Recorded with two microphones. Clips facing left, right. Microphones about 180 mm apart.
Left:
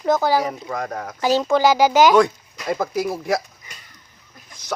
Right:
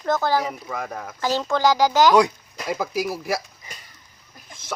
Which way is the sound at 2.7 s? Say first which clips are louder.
Left 3 dB; 5° right (ahead or behind).